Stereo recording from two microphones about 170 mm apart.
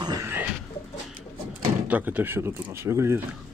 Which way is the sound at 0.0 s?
25° right (ahead or behind).